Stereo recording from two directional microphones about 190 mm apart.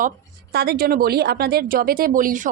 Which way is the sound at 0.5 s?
55° right (ahead or behind).